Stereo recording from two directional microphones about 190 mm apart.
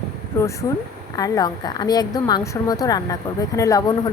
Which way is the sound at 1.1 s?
20° left (ahead or behind).